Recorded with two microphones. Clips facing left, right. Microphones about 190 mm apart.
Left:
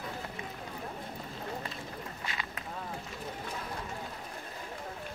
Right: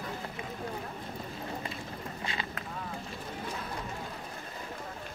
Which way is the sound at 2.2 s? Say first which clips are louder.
Right 4 dB; 30° right (ahead or behind).